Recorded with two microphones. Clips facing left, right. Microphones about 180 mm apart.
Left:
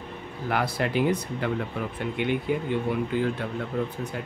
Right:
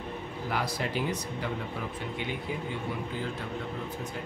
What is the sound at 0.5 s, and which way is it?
Speech, 60° left (ahead or behind).